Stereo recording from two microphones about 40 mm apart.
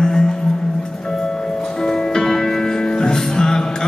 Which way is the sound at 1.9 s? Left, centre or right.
Centre.